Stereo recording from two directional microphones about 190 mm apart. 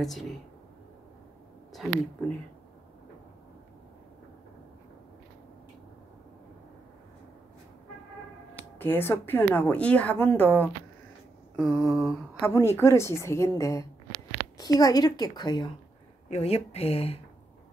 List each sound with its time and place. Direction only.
0.0 s speech: centre (ahead or behind)
1.7 s speech: centre (ahead or behind)
8.7 s a woman's voice: 10° left (ahead or behind)
16.3 s speech: 35° left (ahead or behind)